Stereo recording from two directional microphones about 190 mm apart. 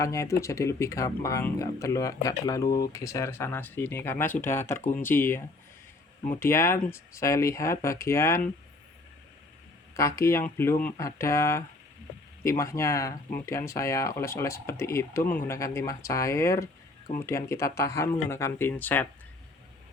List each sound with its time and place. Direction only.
0.0 s speech: 15° left (ahead or behind)
4.8 s speech: 40° left (ahead or behind)
5.0 s speech: 10° left (ahead or behind)
6.4 s speech: 15° left (ahead or behind)
9.9 s speech: 15° left (ahead or behind)